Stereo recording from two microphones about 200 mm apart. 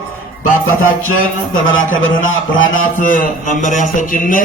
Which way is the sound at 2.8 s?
40° left (ahead or behind).